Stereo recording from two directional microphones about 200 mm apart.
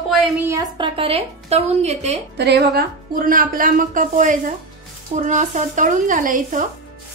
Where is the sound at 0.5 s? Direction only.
25° right (ahead or behind).